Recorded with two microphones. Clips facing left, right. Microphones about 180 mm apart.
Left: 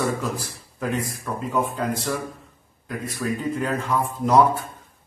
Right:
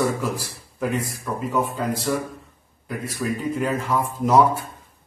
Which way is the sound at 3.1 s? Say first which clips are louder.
Right 1 dB; 5° right (ahead or behind).